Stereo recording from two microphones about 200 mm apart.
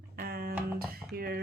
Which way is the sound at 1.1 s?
50° right (ahead or behind).